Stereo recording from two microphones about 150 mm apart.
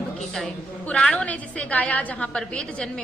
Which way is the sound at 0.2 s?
5° left (ahead or behind).